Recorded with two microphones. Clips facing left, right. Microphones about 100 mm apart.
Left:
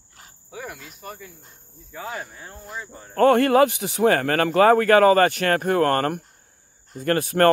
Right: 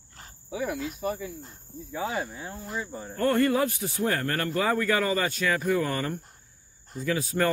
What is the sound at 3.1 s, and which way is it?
Speech, 80° left.